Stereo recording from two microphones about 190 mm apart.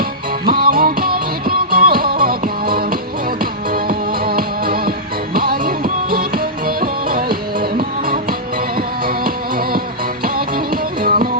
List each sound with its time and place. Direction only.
0.0 s music: 50° right (ahead or behind)